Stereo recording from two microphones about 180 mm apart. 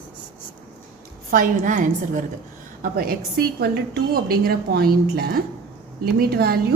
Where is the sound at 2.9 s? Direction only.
55° right (ahead or behind).